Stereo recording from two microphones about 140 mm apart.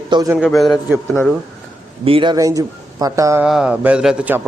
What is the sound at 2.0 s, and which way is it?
Speech, 35° right (ahead or behind).